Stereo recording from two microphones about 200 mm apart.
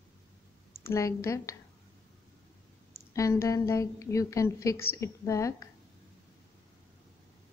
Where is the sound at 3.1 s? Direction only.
15° left (ahead or behind).